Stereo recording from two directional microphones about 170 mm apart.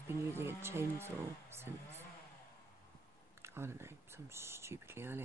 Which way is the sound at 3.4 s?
15° right (ahead or behind).